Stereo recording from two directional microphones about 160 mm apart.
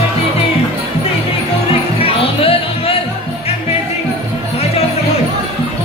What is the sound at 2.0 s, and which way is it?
Music, 35° left (ahead or behind).